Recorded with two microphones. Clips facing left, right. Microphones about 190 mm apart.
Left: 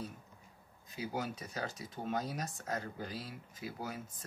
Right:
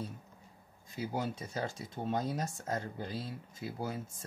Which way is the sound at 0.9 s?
25° right (ahead or behind).